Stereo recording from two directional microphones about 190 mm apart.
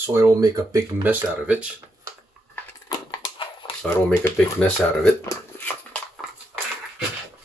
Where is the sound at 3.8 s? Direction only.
10° left (ahead or behind).